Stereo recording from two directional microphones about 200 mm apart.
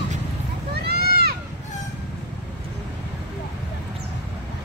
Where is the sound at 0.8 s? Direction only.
50° right (ahead or behind).